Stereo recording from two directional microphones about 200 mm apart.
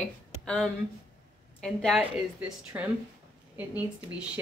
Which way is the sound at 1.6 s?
Centre (ahead or behind).